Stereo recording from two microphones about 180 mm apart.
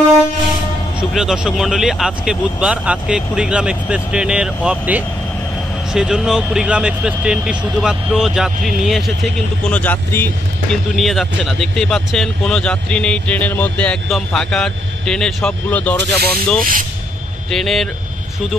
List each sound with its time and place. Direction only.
1.1 s speech: 5° right (ahead or behind)